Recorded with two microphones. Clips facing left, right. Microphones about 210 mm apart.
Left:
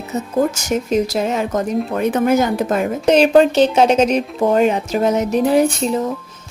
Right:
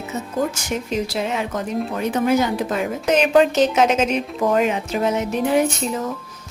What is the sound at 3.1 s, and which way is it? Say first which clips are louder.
Speech: left 4 dB; 35° left (ahead or behind).